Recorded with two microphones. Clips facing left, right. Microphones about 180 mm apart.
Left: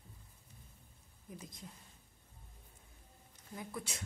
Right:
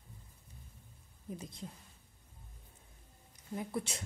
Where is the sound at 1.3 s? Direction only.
30° right (ahead or behind).